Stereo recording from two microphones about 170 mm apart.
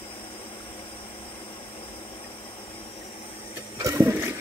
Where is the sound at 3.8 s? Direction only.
20° right (ahead or behind).